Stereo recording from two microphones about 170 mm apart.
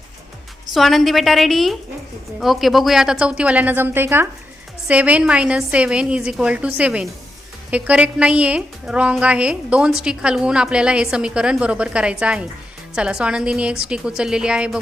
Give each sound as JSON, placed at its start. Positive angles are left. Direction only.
{"t": 0.7, "sound": "a woman's voice", "side_deg": 0}